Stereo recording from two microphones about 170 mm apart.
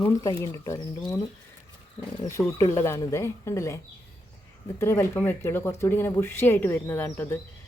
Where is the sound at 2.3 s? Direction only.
20° left (ahead or behind).